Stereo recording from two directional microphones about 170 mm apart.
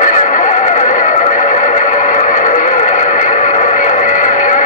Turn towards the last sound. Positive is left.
turn(degrees=45)  # may be behind; listen again after turning